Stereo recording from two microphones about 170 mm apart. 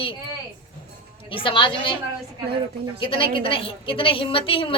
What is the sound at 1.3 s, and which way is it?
Speech, 30° left (ahead or behind).